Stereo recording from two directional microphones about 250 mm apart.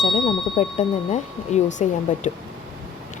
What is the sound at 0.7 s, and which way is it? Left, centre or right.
Speech, left.